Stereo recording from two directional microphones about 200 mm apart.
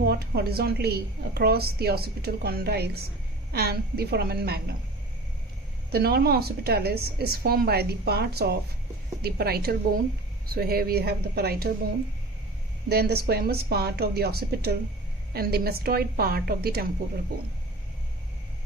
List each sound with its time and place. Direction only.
0.0 s a woman's voice: 50° right (ahead or behind)
5.9 s a woman's voice: 50° right (ahead or behind)
12.8 s a woman's voice: 55° right (ahead or behind)